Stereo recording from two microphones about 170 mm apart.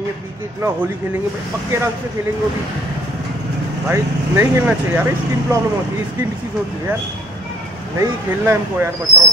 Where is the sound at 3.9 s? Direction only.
15° right (ahead or behind).